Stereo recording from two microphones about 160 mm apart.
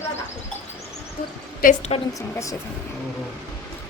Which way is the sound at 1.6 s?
50° left (ahead or behind).